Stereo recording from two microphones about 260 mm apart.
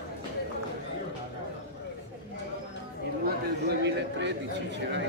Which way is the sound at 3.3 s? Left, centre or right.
Right.